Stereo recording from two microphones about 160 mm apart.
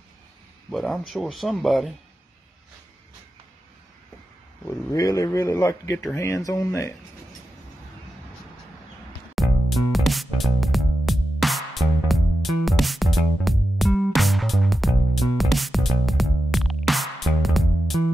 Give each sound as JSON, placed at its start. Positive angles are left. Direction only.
{"t": 0.7, "sound": "speech", "side_deg": 0}
{"t": 4.6, "sound": "speech", "side_deg": 20}
{"t": 9.3, "sound": "music", "side_deg": 0}